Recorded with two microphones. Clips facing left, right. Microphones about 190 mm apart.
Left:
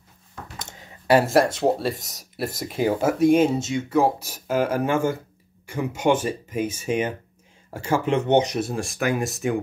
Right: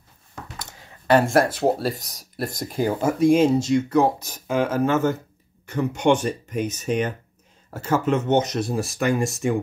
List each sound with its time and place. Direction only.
0.6 s a sound: 20° left (ahead or behind)
1.0 s speech: 5° left (ahead or behind)
8.5 s speech: centre (ahead or behind)